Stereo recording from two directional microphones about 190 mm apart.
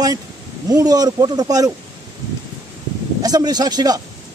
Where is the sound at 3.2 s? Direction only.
20° right (ahead or behind).